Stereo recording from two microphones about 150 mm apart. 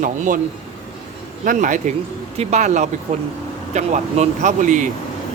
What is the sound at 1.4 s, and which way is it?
Speech, 60° right (ahead or behind).